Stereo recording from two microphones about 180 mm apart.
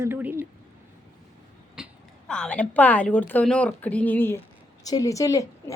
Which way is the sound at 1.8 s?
5° right (ahead or behind).